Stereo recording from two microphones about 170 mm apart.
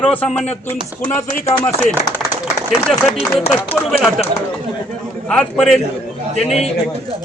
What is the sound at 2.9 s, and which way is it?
Speech, 5° right (ahead or behind).